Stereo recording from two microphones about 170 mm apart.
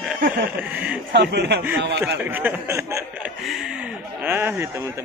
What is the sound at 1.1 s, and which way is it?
Speech, 80° right.